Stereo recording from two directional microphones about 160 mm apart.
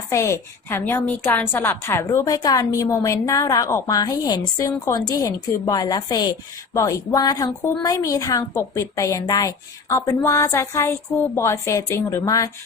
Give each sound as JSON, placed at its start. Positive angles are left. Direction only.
{"t": 0.1, "sound": "a woman's voice", "side_deg": 20}